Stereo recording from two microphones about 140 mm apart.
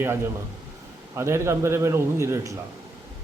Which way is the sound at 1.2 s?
20° right (ahead or behind).